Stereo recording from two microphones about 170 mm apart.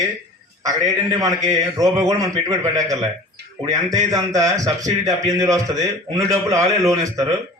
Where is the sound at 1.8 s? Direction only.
20° right (ahead or behind).